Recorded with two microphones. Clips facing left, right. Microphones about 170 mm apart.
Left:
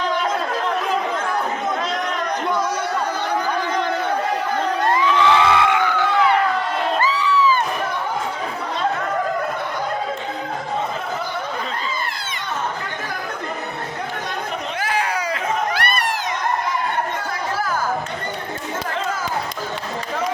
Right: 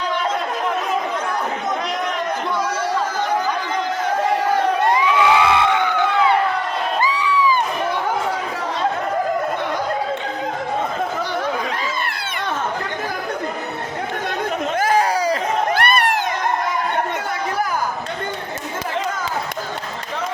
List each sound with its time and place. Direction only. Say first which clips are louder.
4.9 s crowd: left 2 dB; 10° right (ahead or behind)
14.8 s a sound: right 6 dB; 40° right (ahead or behind)
15.8 s crowd: right 5 dB; 60° right (ahead or behind)